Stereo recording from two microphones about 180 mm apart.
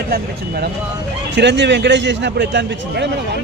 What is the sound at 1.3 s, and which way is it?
A man's voice, 75° right (ahead or behind).